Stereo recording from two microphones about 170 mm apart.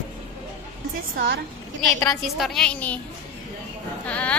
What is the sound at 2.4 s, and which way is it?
Speech, 5° left (ahead or behind).